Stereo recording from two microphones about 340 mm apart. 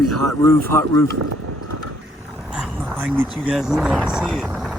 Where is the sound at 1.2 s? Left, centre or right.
Right.